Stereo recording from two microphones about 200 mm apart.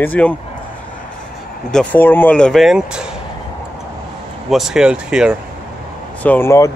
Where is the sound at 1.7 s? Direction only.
10° left (ahead or behind).